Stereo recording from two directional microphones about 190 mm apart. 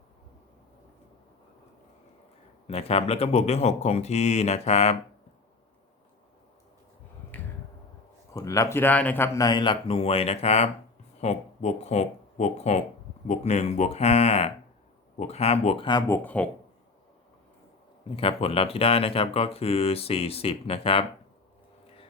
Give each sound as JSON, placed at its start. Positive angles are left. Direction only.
{"t": 2.6, "sound": "speech", "side_deg": 30}
{"t": 7.3, "sound": "a sound", "side_deg": 10}
{"t": 8.3, "sound": "speech", "side_deg": 15}
{"t": 18.2, "sound": "speech", "side_deg": 30}